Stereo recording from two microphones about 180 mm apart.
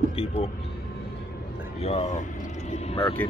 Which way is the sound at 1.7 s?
35° left (ahead or behind).